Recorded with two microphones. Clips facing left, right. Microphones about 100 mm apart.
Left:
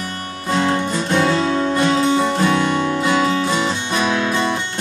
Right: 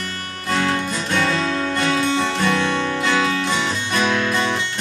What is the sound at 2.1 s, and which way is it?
Music, 10° left (ahead or behind).